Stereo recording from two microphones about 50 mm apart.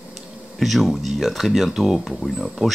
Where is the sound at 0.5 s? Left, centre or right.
Centre.